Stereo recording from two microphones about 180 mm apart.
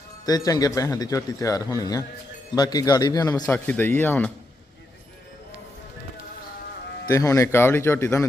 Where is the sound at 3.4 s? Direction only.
10° left (ahead or behind).